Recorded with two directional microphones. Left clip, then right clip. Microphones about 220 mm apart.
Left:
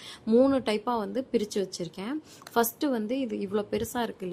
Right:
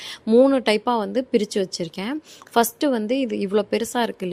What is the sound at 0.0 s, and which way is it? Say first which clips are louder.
A woman's voice: right 7 dB; 20° right (ahead or behind).